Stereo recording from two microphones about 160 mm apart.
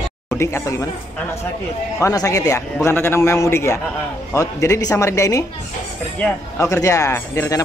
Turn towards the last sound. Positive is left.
turn(degrees=20)  # may be behind; listen again after turning